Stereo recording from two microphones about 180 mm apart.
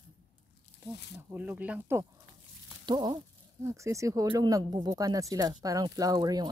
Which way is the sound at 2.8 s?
25° right (ahead or behind).